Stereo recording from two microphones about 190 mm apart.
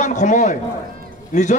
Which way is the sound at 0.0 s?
40° left (ahead or behind).